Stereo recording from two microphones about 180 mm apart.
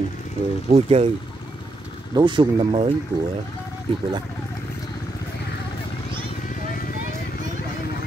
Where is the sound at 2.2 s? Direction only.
25° right (ahead or behind).